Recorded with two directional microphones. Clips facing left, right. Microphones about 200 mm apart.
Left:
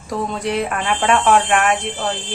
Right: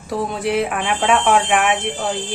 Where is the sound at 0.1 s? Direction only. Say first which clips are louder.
Right 1 dB; 5° right (ahead or behind).